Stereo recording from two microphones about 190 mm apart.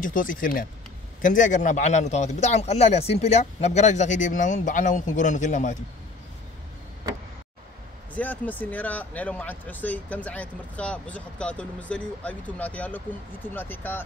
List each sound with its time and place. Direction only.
0.0 s a man's voice: 45° left (ahead or behind)
8.1 s speech: 10° left (ahead or behind)